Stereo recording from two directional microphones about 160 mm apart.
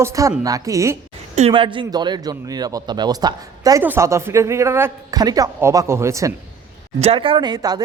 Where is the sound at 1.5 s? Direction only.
30° right (ahead or behind).